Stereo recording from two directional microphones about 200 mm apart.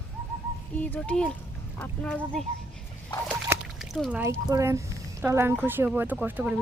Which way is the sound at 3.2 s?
5° right (ahead or behind).